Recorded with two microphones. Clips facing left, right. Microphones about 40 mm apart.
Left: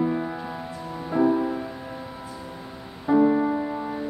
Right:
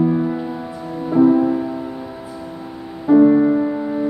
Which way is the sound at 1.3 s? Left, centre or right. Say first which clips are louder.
Right 8 dB; centre.